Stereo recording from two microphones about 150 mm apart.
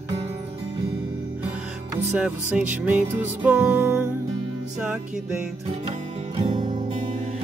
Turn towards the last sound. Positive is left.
turn(degrees=-30)  # may be behind; listen again after turning